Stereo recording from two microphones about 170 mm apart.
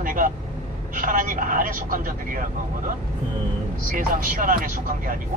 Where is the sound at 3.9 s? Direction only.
55° right (ahead or behind).